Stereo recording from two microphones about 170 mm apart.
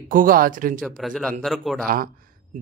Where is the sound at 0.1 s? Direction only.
55° right (ahead or behind).